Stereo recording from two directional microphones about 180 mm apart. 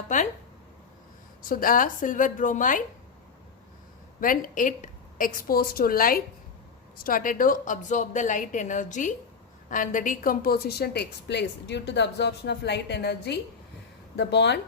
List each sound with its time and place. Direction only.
0.1 s a woman's voice: 45° left (ahead or behind)
1.5 s a woman's voice: 50° left (ahead or behind)
4.2 s a woman's voice: 50° left (ahead or behind); by 14.6 s 70° left (ahead or behind)